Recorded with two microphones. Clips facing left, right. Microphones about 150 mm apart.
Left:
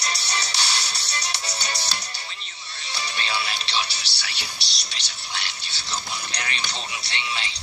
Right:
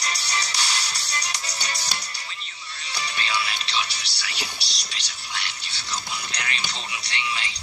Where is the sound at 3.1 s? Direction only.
30° left (ahead or behind).